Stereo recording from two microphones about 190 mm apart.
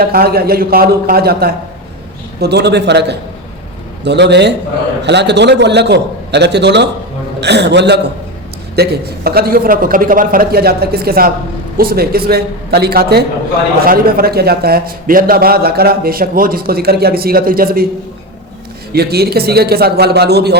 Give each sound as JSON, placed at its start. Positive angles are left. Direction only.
{"t": 0.0, "sound": "a man's voice", "side_deg": -50}
{"t": 18.9, "sound": "a man's voice", "side_deg": -55}